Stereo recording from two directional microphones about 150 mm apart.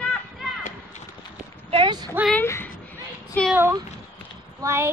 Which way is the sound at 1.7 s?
30° right (ahead or behind).